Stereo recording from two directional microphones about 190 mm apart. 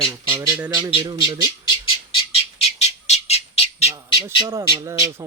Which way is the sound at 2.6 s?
35° left (ahead or behind).